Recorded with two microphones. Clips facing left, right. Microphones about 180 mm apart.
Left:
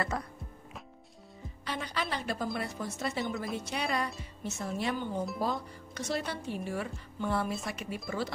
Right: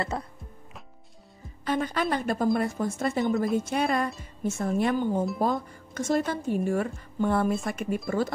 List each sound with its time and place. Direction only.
0.1 s music: 25° right (ahead or behind)
1.6 s speech: 50° right (ahead or behind)